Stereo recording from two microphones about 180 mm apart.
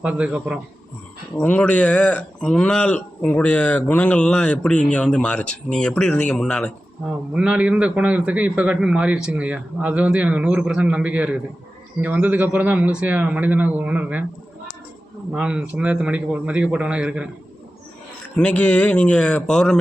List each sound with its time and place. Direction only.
0.0 s speech: 5° right (ahead or behind)
1.4 s speech: 10° left (ahead or behind)
7.3 s a man's voice: 5° right (ahead or behind)
15.3 s speech: 5° right (ahead or behind)
18.3 s speech: 5° left (ahead or behind)